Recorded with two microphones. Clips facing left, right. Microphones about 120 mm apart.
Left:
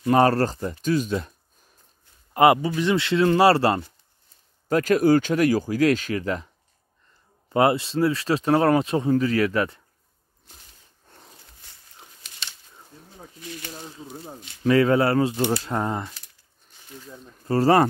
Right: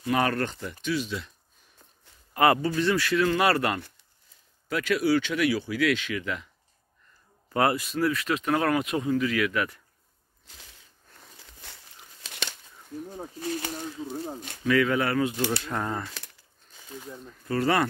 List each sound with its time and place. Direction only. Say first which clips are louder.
0.0 s speech: left 7 dB; 35° left (ahead or behind)
2.3 s speech: left 4 dB; 20° left (ahead or behind)
4.6 s speech: left 6 dB; 40° left (ahead or behind)
7.5 s speech: left 5 dB; 25° left (ahead or behind)
10.4 s a sound: even; 90° right
12.3 s bird flight: right 6 dB; 75° right (ahead or behind)
13.4 s speech: right 7 dB; 40° right (ahead or behind)
14.6 s speech: left 5 dB; 35° left (ahead or behind)
17.4 s speech: left 7 dB; 35° left (ahead or behind)